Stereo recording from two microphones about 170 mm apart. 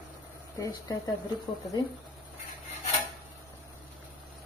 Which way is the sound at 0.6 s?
20° left (ahead or behind).